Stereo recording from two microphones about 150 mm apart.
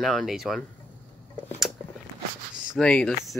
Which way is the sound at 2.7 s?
5° left (ahead or behind).